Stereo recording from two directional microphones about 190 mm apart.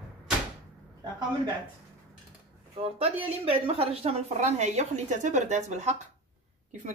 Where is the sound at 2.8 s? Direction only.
30° right (ahead or behind).